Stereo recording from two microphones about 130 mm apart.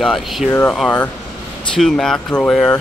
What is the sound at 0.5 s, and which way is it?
Speech, 15° left (ahead or behind).